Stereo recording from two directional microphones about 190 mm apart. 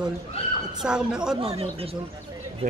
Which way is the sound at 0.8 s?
5° right (ahead or behind).